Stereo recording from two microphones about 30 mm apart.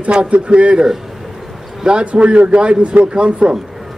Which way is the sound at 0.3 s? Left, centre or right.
Right.